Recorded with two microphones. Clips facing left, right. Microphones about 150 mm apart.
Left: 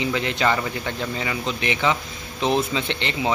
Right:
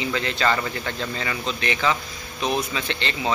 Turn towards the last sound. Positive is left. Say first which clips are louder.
# left 2 dB
turn(degrees=20)  # may be behind; listen again after turning